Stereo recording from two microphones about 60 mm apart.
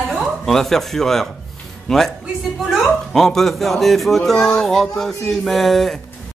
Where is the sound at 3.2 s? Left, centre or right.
Centre.